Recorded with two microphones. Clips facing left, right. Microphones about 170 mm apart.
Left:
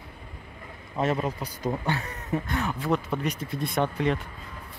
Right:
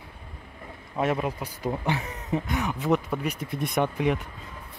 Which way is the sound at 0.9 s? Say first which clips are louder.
Even; 10° right (ahead or behind).